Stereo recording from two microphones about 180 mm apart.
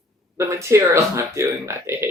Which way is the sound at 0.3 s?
15° right (ahead or behind).